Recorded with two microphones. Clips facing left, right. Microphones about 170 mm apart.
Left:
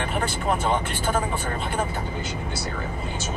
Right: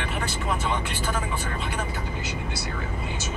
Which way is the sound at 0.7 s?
50° left (ahead or behind).